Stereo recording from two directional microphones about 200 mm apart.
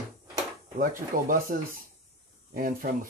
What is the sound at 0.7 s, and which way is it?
Speech, 45° right (ahead or behind).